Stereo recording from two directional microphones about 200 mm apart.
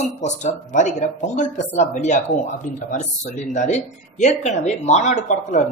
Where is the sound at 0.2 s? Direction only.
35° left (ahead or behind).